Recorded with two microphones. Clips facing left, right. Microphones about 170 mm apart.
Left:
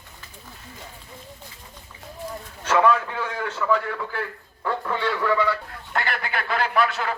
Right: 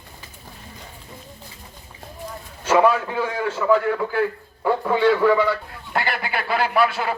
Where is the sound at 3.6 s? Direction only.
15° right (ahead or behind).